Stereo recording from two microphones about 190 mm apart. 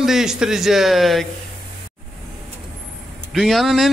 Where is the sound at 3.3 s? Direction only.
Centre (ahead or behind).